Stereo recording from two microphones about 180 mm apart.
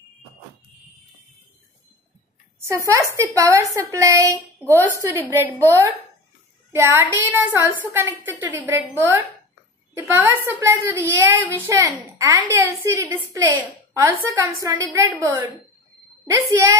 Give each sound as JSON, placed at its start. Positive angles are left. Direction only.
{"t": 2.6, "sound": "a woman's voice", "side_deg": -15}